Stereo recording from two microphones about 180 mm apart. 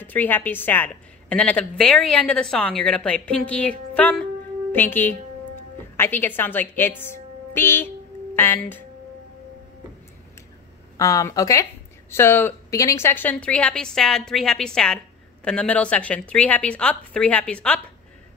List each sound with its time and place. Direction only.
0.0 s a woman's voice: 10° left (ahead or behind)
11.0 s a woman's voice: 20° left (ahead or behind)